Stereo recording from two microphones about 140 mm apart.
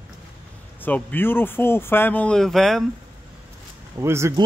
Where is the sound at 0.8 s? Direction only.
15° left (ahead or behind).